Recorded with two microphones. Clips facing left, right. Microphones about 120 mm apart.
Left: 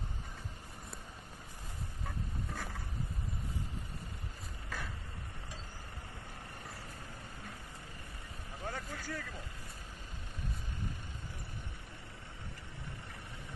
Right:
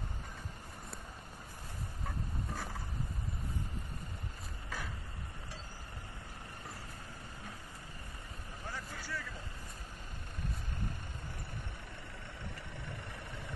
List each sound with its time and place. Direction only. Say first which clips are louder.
8.6 s vehicle: left 3 dB; 50° left (ahead or behind)